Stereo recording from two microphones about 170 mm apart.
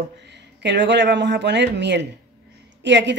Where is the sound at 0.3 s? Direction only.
90° right.